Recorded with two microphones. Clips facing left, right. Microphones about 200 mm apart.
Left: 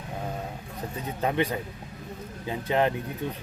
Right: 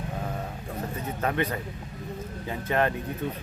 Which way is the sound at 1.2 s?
15° left (ahead or behind).